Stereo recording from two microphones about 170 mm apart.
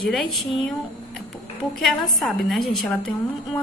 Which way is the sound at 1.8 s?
Centre (ahead or behind).